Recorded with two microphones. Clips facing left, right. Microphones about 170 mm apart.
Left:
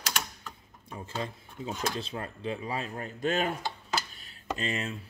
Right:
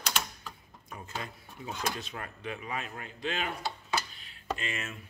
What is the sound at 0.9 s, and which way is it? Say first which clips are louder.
Speech: left 4 dB; 30° left (ahead or behind).